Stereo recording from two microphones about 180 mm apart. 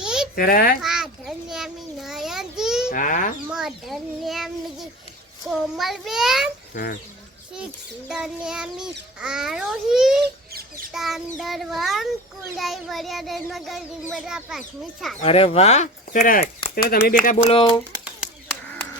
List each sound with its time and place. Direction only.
0.0 s babbling: 5° right (ahead or behind)
0.3 s livestock: 55° left (ahead or behind)
0.8 s a sound: 5° right (ahead or behind)
2.9 s livestock: 45° left (ahead or behind)
3.5 s child singing: centre (ahead or behind)
6.7 s livestock: 50° left (ahead or behind)
7.5 s child singing: 5° right (ahead or behind)
15.2 s speech: 30° left (ahead or behind); by 16.5 s 50° left (ahead or behind)
17.2 s speech: 35° left (ahead or behind)